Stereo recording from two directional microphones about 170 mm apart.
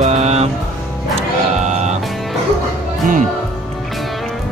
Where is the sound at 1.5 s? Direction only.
40° right (ahead or behind).